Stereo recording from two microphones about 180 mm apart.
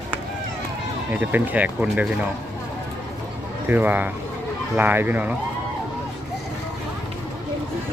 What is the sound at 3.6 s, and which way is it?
Speech, 10° right (ahead or behind).